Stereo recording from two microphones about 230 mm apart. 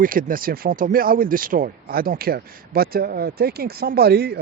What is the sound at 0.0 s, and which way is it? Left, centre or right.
Speech, right.